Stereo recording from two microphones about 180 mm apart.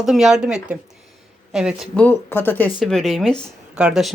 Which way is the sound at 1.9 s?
10° left (ahead or behind).